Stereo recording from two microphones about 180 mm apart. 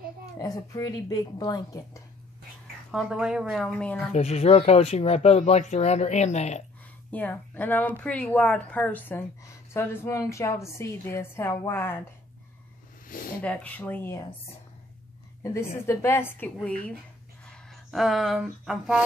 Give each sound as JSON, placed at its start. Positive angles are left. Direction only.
{"t": 0.4, "sound": "speech", "side_deg": 20}
{"t": 2.9, "sound": "a woman's voice", "side_deg": -5}
{"t": 4.1, "sound": "speech", "side_deg": 35}
{"t": 7.1, "sound": "a woman's voice", "side_deg": 10}
{"t": 13.1, "sound": "a sound", "side_deg": 55}
{"t": 13.4, "sound": "a woman's voice", "side_deg": 5}
{"t": 15.8, "sound": "a woman's voice", "side_deg": 15}